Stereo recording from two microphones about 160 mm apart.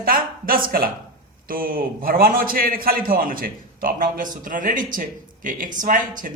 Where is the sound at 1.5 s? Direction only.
65° right (ahead or behind).